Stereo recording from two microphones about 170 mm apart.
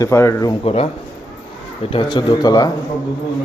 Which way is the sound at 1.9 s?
25° left (ahead or behind).